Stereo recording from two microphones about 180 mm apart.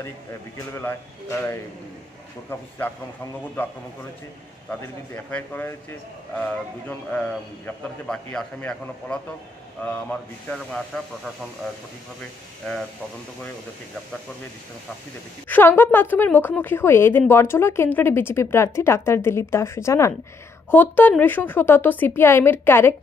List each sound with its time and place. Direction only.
0.7 s speech: 15° left (ahead or behind)
4.6 s speech: 10° left (ahead or behind)
15.4 s speech: 10° left (ahead or behind)